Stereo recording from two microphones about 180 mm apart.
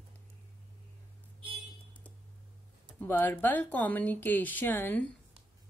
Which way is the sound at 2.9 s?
10° left (ahead or behind).